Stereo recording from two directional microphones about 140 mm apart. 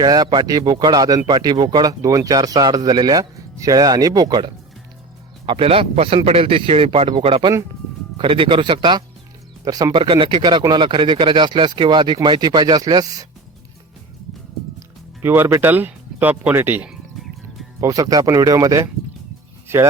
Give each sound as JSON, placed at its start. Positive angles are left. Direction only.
{"t": 0.0, "sound": "speech", "side_deg": -30}
{"t": 5.5, "sound": "speech", "side_deg": -45}
{"t": 14.8, "sound": "speech", "side_deg": -15}
{"t": 16.9, "sound": "music", "side_deg": 0}
{"t": 17.7, "sound": "speech", "side_deg": -25}